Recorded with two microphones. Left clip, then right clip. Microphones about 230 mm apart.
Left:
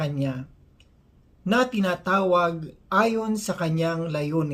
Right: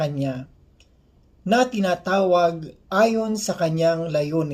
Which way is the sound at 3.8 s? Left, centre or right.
Centre.